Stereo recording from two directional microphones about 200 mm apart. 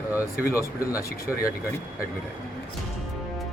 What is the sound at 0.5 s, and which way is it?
Speech, 15° left (ahead or behind).